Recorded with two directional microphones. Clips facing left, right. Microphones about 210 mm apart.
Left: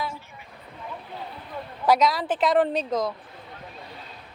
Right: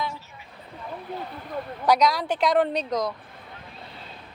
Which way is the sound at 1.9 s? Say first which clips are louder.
Even; 5° left (ahead or behind).